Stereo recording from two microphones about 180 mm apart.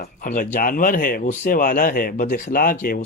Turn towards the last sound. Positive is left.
turn(degrees=50)  # may be behind; listen again after turning